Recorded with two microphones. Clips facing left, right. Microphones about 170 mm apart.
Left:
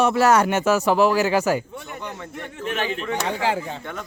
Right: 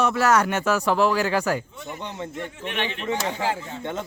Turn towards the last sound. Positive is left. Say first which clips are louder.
# left 3 dB
turn(degrees=75)  # may be behind; listen again after turning